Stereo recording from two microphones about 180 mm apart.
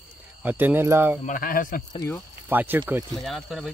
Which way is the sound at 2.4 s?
10° right (ahead or behind).